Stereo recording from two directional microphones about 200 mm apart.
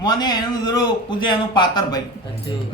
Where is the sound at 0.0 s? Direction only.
20° left (ahead or behind).